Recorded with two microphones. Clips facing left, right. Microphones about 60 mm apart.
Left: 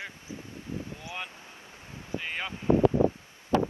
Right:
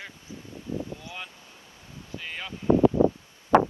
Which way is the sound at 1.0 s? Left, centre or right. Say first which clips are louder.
Left 1 dB; left.